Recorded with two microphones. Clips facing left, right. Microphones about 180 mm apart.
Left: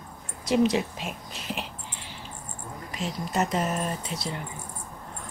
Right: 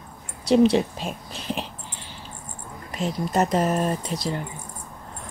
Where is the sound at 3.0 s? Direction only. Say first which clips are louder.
Right 5 dB; 40° right (ahead or behind).